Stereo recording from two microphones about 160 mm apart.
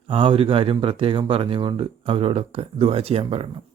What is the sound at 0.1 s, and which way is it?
Speech, 30° right (ahead or behind).